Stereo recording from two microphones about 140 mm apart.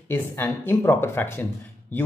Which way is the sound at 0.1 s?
15° left (ahead or behind).